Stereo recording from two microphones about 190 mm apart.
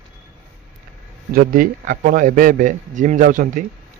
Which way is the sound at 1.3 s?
50° right (ahead or behind).